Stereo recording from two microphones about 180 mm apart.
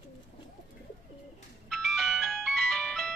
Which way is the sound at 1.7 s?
Centre (ahead or behind).